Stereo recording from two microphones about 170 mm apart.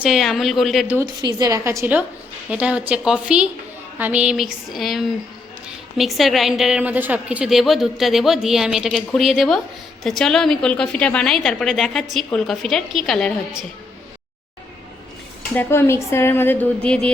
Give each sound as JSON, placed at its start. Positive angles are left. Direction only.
{"t": 0.0, "sound": "a woman's voice", "side_deg": 0}
{"t": 1.2, "sound": "a woman's voice", "side_deg": -25}
{"t": 15.5, "sound": "speech", "side_deg": 15}